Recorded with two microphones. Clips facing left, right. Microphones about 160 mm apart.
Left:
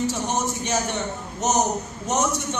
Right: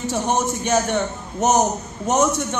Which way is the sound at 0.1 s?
55° right (ahead or behind).